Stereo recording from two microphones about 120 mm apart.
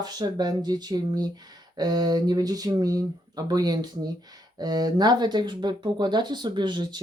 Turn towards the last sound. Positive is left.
turn(degrees=-35)  # may be behind; listen again after turning